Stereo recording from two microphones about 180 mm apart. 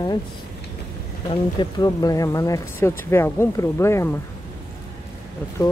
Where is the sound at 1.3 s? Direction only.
25° left (ahead or behind).